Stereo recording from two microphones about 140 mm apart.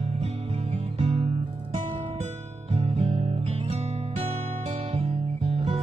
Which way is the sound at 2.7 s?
50° right (ahead or behind).